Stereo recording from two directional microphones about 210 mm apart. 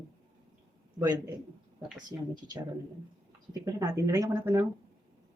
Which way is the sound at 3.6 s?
15° right (ahead or behind).